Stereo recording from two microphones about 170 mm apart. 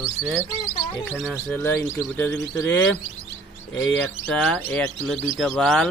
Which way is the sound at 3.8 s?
10° left (ahead or behind).